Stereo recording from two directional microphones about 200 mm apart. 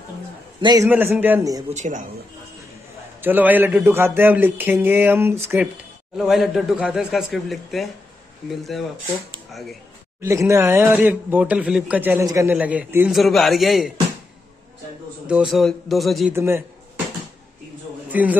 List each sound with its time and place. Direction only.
0.6 s a man's voice: 20° right (ahead or behind)
0.8 s speech: 10° right (ahead or behind)
1.7 s speech: 40° right (ahead or behind)
3.2 s speech: 10° right (ahead or behind)
6.1 s speech: centre (ahead or behind)
10.2 s speech: 15° right (ahead or behind)
15.2 s speech: 5° right (ahead or behind)
16.3 s a sound: 10° right (ahead or behind)
18.1 s a man's voice: 10° right (ahead or behind)